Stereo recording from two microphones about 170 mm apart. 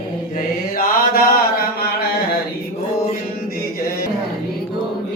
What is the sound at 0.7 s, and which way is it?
Mantra, 60° left (ahead or behind).